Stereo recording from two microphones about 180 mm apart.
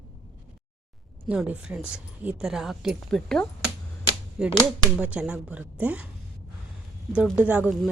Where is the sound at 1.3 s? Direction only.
10° right (ahead or behind).